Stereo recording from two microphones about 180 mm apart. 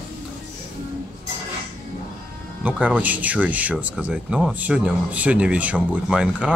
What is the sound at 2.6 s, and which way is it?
Speech, 10° right (ahead or behind).